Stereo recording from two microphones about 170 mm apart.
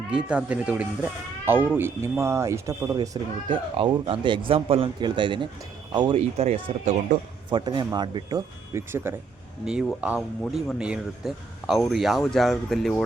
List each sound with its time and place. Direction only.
0.1 s speech: 5° right (ahead or behind)
3.8 s speech: 30° right (ahead or behind)
6.1 s speech: 35° right (ahead or behind)
7.5 s speech: 25° right (ahead or behind); by 13.1 s centre (ahead or behind)